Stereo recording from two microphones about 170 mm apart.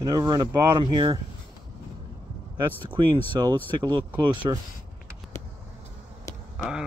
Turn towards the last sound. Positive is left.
turn(degrees=-5)  # may be behind; listen again after turning